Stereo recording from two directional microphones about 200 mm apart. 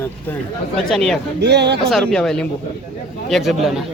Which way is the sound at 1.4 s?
55° right (ahead or behind).